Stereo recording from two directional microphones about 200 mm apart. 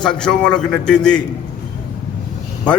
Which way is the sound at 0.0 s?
5° left (ahead or behind).